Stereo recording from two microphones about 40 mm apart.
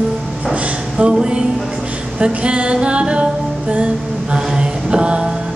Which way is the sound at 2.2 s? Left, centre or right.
Right.